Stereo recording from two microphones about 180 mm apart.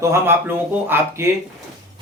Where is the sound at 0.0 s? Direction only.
15° right (ahead or behind).